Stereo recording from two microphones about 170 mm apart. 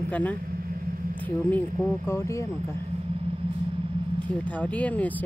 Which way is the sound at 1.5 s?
15° left (ahead or behind).